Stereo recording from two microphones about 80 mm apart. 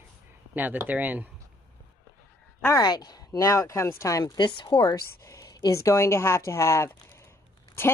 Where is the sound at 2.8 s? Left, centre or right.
Left.